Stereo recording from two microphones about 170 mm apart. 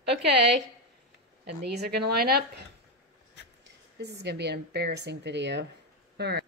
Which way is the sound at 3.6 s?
85° right.